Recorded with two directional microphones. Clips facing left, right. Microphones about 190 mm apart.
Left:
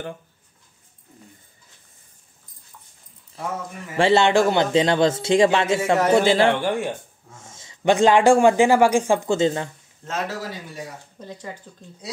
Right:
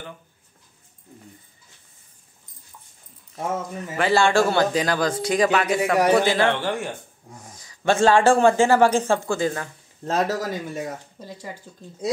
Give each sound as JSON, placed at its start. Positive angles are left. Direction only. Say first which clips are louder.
{"t": 3.9, "sound": "speech", "louder": "left 2 dB", "side_deg": 25}
{"t": 6.5, "sound": "speech", "louder": "left 3 dB", "side_deg": 15}
{"t": 10.0, "sound": "speech", "louder": "right 5 dB", "side_deg": -40}
{"t": 11.1, "sound": "speech", "louder": "left 1 dB", "side_deg": -10}